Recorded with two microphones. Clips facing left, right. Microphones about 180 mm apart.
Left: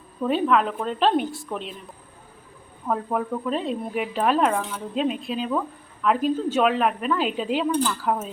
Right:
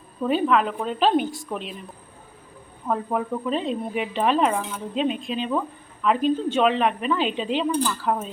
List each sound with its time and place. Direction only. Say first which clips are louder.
0.2 s a woman's voice: even; centre (ahead or behind)
2.8 s a woman's voice: even; centre (ahead or behind)
7.7 s a woman's voice: even; 5° right (ahead or behind)